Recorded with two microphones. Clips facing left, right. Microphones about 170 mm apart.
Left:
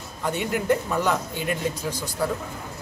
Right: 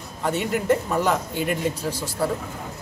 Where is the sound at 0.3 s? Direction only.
Centre (ahead or behind).